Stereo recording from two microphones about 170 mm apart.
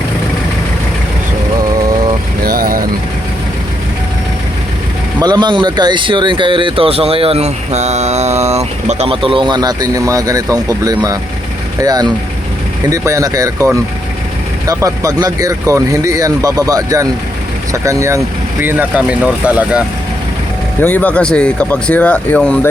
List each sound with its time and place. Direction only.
2.4 s vehicle: 60° right (ahead or behind)
5.2 s speech: 25° right (ahead or behind)
14.7 s speech: 20° right (ahead or behind)
20.8 s speech: 10° left (ahead or behind)